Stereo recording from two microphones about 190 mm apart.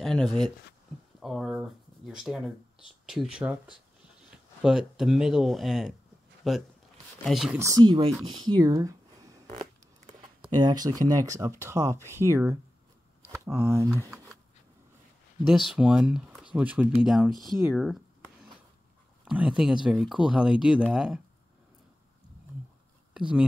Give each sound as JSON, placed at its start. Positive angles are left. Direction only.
{"t": 0.0, "sound": "speech", "side_deg": 0}
{"t": 7.5, "sound": "speech", "side_deg": -15}
{"t": 9.5, "sound": "a sound", "side_deg": -40}
{"t": 10.5, "sound": "speech", "side_deg": -20}
{"t": 15.4, "sound": "speech", "side_deg": 0}
{"t": 19.2, "sound": "speech", "side_deg": -5}
{"t": 23.1, "sound": "speech", "side_deg": -5}